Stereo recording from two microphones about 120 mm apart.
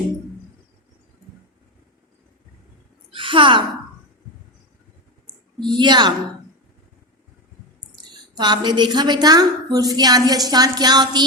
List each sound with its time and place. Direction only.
3.1 s a sound: 45° right (ahead or behind)
5.5 s a woman's voice: 40° right (ahead or behind)
8.4 s a woman's voice: 35° right (ahead or behind)